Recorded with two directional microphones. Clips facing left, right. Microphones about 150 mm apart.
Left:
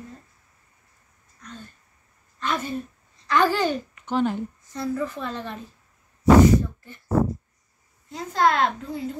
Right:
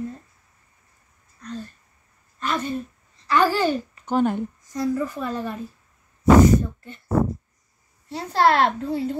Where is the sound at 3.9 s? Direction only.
45° right (ahead or behind).